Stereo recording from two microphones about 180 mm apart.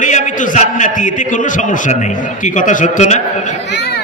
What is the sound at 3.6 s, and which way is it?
Speech, 70° left (ahead or behind).